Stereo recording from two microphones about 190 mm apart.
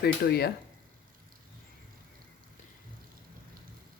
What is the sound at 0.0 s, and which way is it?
Speech, 55° left (ahead or behind).